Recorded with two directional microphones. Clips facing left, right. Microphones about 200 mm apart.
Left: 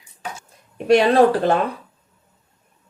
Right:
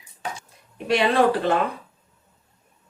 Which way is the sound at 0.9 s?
45° left (ahead or behind).